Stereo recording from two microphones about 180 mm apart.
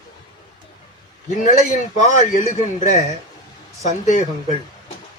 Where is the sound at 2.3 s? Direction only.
40° left (ahead or behind).